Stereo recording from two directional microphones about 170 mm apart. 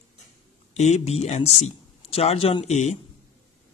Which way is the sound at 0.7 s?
40° left (ahead or behind).